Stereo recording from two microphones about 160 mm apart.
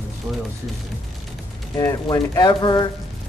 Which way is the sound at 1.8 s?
25° left (ahead or behind).